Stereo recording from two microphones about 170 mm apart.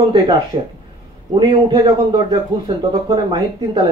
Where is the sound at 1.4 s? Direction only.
25° right (ahead or behind).